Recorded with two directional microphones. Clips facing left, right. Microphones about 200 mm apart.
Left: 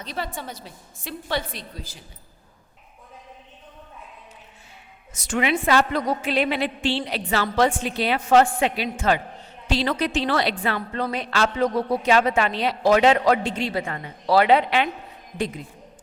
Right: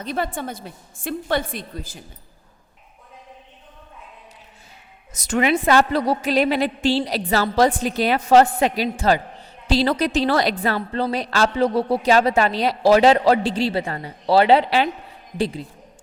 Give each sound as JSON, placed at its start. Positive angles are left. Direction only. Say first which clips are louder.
{"t": 0.0, "sound": "a woman's voice", "louder": "right 6 dB", "side_deg": -50}
{"t": 5.1, "sound": "a woman's voice", "louder": "right 4 dB", "side_deg": -40}